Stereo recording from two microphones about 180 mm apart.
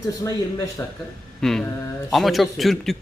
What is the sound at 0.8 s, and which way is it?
Speech, 20° left (ahead or behind).